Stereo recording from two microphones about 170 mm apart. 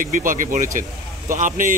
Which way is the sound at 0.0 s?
50° right (ahead or behind).